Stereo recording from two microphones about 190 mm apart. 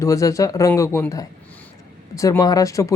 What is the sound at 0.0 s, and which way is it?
Speech, 15° left (ahead or behind).